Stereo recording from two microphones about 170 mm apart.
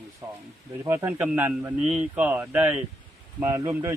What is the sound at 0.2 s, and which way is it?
Speech, 15° right (ahead or behind).